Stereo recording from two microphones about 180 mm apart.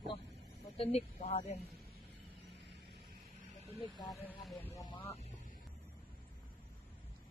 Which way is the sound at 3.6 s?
25° left (ahead or behind).